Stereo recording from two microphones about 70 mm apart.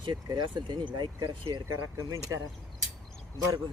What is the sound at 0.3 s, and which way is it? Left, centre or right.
Speech, right.